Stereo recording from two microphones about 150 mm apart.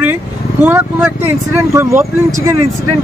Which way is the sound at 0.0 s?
15° right (ahead or behind).